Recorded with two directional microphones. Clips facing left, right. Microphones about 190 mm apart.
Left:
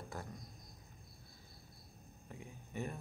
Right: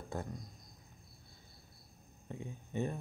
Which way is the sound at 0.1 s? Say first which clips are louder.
Right 7 dB; 25° right (ahead or behind).